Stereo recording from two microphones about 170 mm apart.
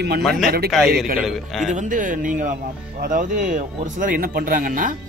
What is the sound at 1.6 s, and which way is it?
Speech, 45° right (ahead or behind).